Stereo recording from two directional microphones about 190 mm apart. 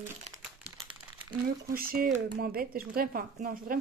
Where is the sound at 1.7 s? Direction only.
50° right (ahead or behind).